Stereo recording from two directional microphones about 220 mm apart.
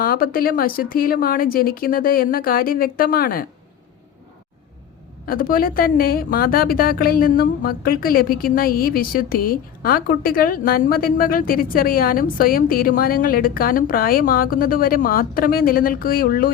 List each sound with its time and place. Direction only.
0.0 s a woman's voice: 40° left (ahead or behind)
5.2 s a woman's voice: 40° left (ahead or behind)